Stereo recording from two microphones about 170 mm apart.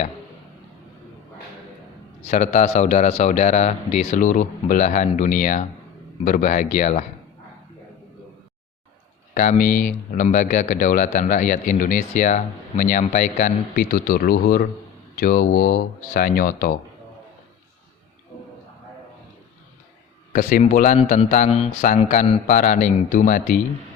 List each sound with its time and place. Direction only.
2.2 s speech: 40° left (ahead or behind)
9.3 s speech: 50° left (ahead or behind)
20.3 s speech: 55° left (ahead or behind)